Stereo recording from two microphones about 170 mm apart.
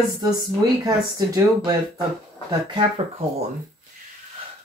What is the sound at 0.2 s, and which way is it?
Speech, 25° right (ahead or behind).